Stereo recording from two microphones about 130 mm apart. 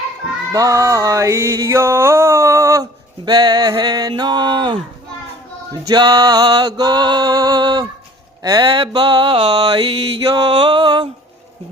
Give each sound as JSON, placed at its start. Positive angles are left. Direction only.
{"t": 0.5, "sound": "a sound", "side_deg": -25}
{"t": 3.2, "sound": "mantra", "side_deg": -30}
{"t": 5.9, "sound": "mantra", "side_deg": -30}